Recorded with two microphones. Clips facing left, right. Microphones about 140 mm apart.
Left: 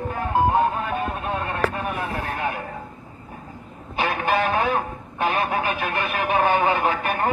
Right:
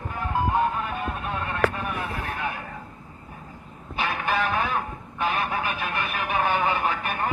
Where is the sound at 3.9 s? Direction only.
40° left (ahead or behind).